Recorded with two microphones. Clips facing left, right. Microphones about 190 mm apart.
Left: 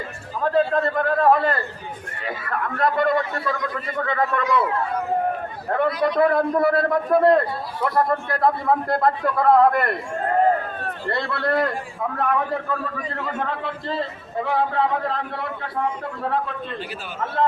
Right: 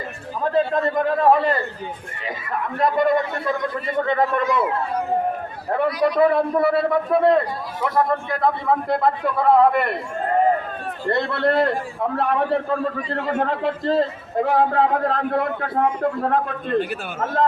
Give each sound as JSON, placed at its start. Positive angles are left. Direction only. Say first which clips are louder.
{"t": 0.5, "sound": "a man's voice", "louder": "even", "side_deg": -10}
{"t": 2.7, "sound": "a man's voice", "louder": "right 2 dB", "side_deg": -15}
{"t": 5.7, "sound": "a man's voice", "louder": "right 1 dB", "side_deg": -10}
{"t": 8.9, "sound": "a man's voice", "louder": "even", "side_deg": 0}
{"t": 11.1, "sound": "a man's voice", "louder": "right 4 dB", "side_deg": -20}